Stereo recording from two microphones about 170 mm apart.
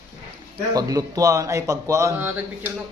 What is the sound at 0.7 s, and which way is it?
A man's voice, 20° right (ahead or behind).